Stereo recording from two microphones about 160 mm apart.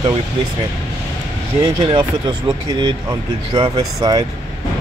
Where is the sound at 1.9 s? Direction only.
30° right (ahead or behind).